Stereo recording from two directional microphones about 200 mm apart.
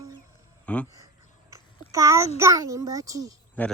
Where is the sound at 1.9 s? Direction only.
15° right (ahead or behind).